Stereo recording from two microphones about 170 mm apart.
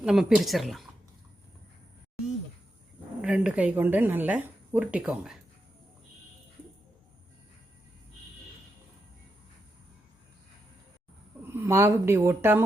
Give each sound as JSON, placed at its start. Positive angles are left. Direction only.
{"t": 0.0, "sound": "a woman's voice", "side_deg": 0}
{"t": 3.2, "sound": "a woman's voice", "side_deg": -5}
{"t": 11.6, "sound": "a woman's voice", "side_deg": -15}